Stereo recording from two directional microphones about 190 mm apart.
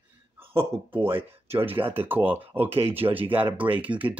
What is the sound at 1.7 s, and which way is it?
Speech, 10° right (ahead or behind).